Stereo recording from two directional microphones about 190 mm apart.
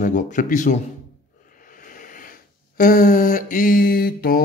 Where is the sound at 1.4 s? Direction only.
45° left (ahead or behind).